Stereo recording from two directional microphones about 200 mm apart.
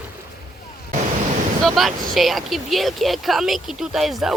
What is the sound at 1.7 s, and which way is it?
Speech, centre (ahead or behind).